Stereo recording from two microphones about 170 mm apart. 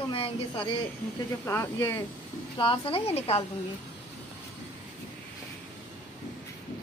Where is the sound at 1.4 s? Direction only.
15° left (ahead or behind).